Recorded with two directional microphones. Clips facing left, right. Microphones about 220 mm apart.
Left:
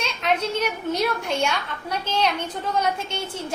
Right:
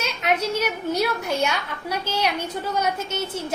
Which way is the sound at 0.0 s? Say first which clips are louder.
Even; 10° right (ahead or behind).